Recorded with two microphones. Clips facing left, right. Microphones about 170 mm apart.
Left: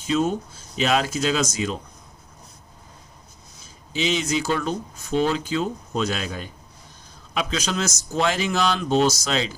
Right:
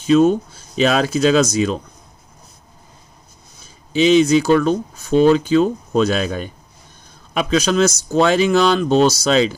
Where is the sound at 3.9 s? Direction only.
65° right (ahead or behind).